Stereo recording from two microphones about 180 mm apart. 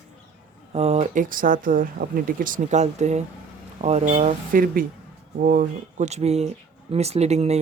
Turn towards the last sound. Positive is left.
turn(degrees=-35)  # may be behind; listen again after turning